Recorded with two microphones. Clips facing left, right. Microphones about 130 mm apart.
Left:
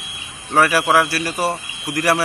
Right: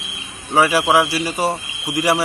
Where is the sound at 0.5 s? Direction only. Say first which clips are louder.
Right 1 dB; 15° right (ahead or behind).